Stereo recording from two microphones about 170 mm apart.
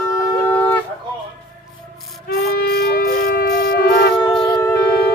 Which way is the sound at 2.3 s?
70° left (ahead or behind).